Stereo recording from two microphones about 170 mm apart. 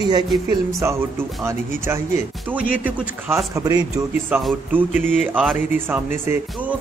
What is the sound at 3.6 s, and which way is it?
Speech, 20° right (ahead or behind).